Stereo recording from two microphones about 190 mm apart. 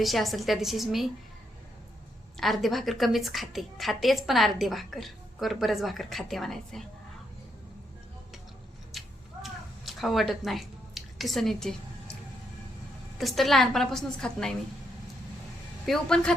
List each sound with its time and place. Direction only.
0.0 s a woman's voice: centre (ahead or behind)
2.4 s a woman's voice: centre (ahead or behind)
8.9 s a sound: centre (ahead or behind)
13.1 s a woman's voice: centre (ahead or behind)
15.9 s a woman's voice: 5° left (ahead or behind)